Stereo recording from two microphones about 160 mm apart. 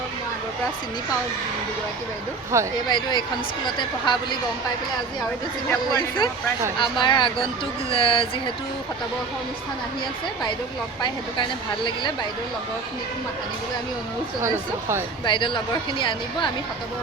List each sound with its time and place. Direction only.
2.5 s speech: 20° right (ahead or behind)
2.9 s speech: 25° left (ahead or behind)
5.9 s speech: 25° left (ahead or behind)
14.4 s speech: 15° right (ahead or behind)
15.2 s speech: 30° left (ahead or behind)